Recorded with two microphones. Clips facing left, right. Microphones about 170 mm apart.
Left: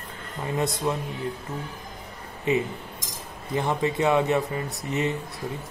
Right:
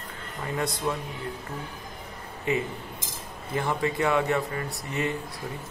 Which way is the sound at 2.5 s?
20° left (ahead or behind).